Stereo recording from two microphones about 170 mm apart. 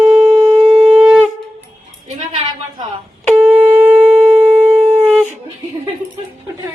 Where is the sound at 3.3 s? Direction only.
5° right (ahead or behind).